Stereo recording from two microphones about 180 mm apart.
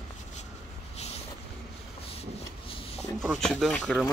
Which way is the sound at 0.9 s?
35° left (ahead or behind).